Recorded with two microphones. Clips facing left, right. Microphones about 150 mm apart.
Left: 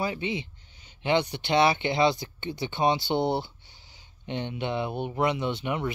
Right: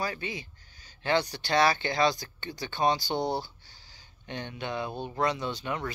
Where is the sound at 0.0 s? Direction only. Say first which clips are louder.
Left 4 dB; 20° left (ahead or behind).